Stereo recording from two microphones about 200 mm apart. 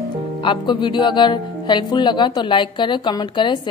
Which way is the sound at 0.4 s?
25° left (ahead or behind).